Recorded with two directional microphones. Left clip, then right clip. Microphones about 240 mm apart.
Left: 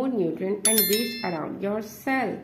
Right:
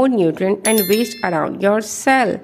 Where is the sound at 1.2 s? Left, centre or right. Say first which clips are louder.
Right 12 dB; right.